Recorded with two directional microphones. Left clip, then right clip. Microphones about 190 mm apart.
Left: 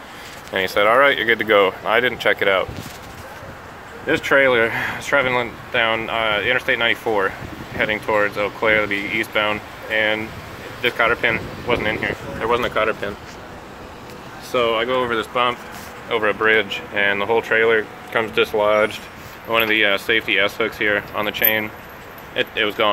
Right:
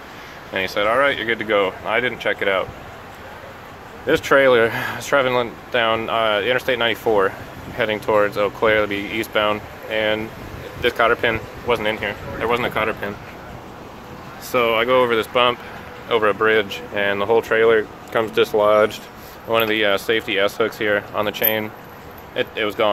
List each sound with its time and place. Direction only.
0.5 s speech: 10° left (ahead or behind)
4.1 s speech: 15° right (ahead or behind)
12.4 s speech: 35° right (ahead or behind)
14.5 s speech: 40° right (ahead or behind)
15.1 s speech: 15° right (ahead or behind)
16.1 s speech: 5° right (ahead or behind)
22.3 s speech: centre (ahead or behind)